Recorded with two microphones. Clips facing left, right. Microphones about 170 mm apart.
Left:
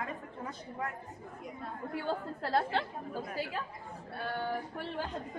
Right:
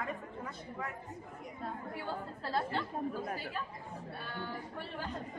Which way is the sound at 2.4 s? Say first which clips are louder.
Left 3 dB; 75° left (ahead or behind).